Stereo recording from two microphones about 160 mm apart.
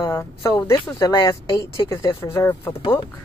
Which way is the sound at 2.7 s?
35° left (ahead or behind).